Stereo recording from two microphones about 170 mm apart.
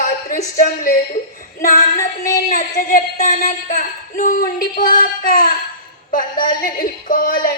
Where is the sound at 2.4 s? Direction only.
55° left (ahead or behind).